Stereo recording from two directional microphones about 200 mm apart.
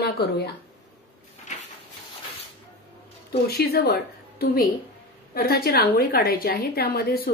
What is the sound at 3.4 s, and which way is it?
A woman's voice, 50° left (ahead or behind).